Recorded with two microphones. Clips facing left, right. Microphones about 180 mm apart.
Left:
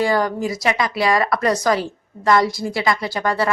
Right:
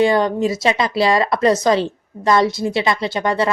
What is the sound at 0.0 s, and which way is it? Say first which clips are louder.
A woman's voice: right 4 dB; 25° right (ahead or behind).